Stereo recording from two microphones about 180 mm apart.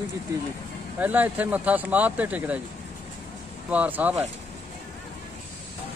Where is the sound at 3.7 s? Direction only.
10° right (ahead or behind).